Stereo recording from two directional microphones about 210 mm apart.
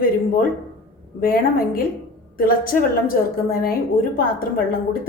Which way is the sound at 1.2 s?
45° left (ahead or behind).